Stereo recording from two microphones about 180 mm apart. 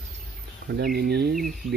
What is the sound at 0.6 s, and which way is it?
Speech, 60° right (ahead or behind).